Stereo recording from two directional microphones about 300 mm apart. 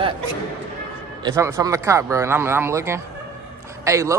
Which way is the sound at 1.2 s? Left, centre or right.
Centre.